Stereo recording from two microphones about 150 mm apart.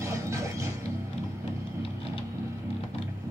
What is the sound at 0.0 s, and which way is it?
Music, 20° right (ahead or behind).